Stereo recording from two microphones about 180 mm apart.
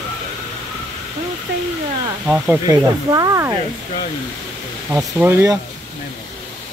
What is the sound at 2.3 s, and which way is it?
Speech, 15° right (ahead or behind).